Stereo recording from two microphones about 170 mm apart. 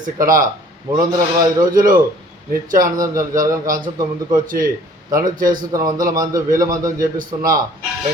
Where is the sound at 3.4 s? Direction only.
55° right (ahead or behind).